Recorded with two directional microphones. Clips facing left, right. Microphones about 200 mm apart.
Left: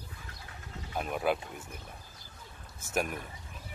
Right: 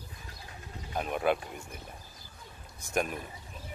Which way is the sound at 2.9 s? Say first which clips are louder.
Right 1 dB; 5° left (ahead or behind).